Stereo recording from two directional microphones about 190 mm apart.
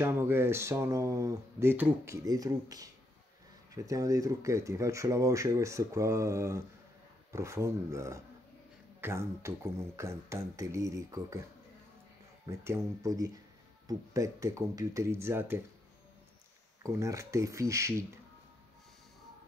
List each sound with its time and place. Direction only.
0.0 s speech: 10° right (ahead or behind)
12.4 s speech: 15° right (ahead or behind)
16.8 s speech: 15° right (ahead or behind)